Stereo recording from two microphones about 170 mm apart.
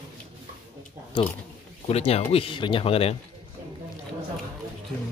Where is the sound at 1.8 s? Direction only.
35° left (ahead or behind).